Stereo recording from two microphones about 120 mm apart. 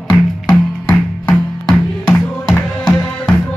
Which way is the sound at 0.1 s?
10° left (ahead or behind).